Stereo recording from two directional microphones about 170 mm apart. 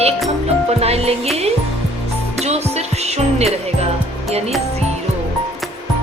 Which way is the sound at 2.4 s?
40° right (ahead or behind).